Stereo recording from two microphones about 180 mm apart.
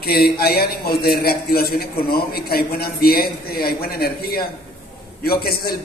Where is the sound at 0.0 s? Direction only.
60° left (ahead or behind).